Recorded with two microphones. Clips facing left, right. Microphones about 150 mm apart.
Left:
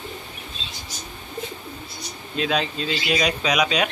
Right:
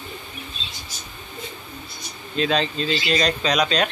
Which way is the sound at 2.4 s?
5° left (ahead or behind).